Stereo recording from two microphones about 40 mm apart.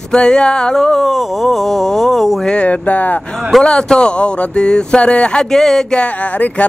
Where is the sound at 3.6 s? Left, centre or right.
Centre.